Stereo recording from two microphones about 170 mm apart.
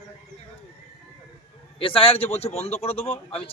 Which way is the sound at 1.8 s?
30° left (ahead or behind).